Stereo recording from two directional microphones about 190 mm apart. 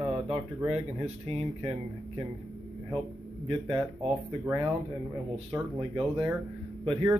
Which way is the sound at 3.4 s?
30° right (ahead or behind).